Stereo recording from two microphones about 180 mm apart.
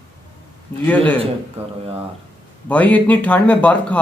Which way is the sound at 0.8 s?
10° left (ahead or behind).